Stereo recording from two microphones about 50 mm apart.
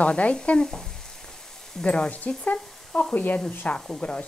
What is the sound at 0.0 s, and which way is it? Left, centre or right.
Speech, left.